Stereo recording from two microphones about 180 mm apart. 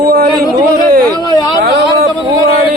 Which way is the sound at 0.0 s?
60° right (ahead or behind).